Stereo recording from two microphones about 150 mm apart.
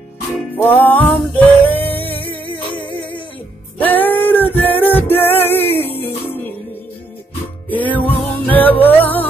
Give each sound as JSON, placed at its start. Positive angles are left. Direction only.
{"t": 0.6, "sound": "music", "side_deg": 10}
{"t": 7.7, "sound": "music", "side_deg": 10}